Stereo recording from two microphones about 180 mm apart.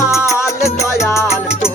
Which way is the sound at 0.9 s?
15° left (ahead or behind).